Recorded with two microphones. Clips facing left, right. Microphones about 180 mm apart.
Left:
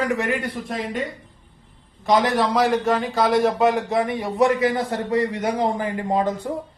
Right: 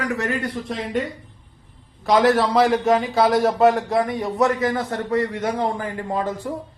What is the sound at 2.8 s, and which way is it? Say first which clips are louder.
A man's voice: right 2 dB; 10° right (ahead or behind).